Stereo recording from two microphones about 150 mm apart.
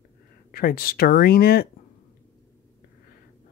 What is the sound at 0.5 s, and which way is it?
Speech, 80° left.